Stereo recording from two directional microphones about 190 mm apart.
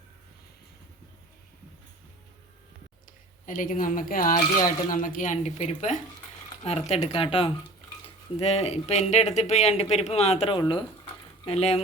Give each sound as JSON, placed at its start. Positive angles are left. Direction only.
{"t": 3.1, "sound": "speech", "side_deg": 45}